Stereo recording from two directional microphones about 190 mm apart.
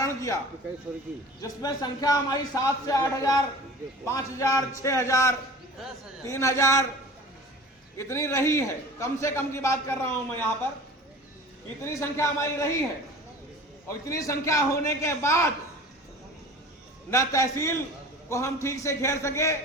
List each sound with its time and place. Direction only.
0.0 s a sound: 15° left (ahead or behind)
1.4 s a man's voice: 20° left (ahead or behind)
7.9 s a man's voice: 15° left (ahead or behind)
11.8 s a man's voice: 15° left (ahead or behind)
14.1 s a man's voice: 15° left (ahead or behind)
17.1 s a man's voice: 15° left (ahead or behind)